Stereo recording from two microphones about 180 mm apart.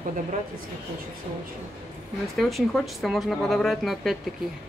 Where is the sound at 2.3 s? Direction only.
Centre (ahead or behind).